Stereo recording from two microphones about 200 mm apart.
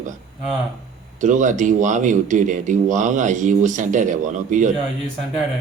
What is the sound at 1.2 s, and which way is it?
Speech, 40° right (ahead or behind).